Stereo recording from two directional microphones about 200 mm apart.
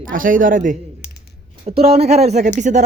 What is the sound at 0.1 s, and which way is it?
A man's voice, 45° right (ahead or behind).